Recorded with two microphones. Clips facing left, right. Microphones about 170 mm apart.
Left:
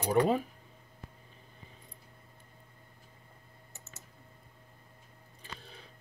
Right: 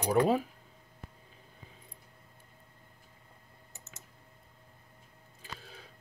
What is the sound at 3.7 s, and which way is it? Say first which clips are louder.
Computer keyboard: even; 15° right (ahead or behind).